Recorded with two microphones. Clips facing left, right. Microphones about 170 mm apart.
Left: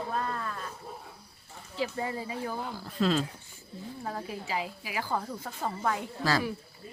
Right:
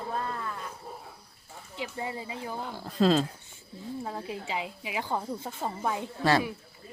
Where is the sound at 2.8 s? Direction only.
35° right (ahead or behind).